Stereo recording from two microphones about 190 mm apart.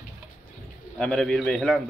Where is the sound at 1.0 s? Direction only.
5° left (ahead or behind).